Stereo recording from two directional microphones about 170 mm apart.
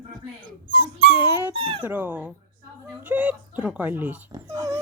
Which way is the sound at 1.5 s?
30° right (ahead or behind).